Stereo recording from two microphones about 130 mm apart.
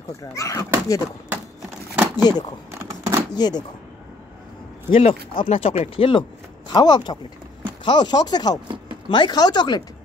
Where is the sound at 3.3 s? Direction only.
30° left (ahead or behind).